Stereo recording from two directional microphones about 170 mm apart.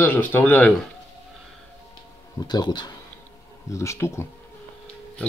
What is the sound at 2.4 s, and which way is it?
Speech, 25° left (ahead or behind).